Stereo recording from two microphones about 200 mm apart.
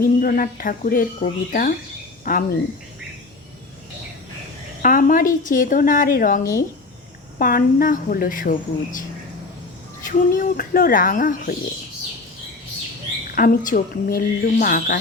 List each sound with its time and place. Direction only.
0.0 s speech: 45° left (ahead or behind)
4.8 s a woman's voice: 40° left (ahead or behind)
13.3 s speech: 45° left (ahead or behind)